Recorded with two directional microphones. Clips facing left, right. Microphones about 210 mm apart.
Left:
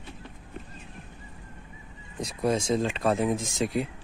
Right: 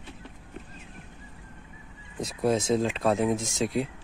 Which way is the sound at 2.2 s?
5° right (ahead or behind).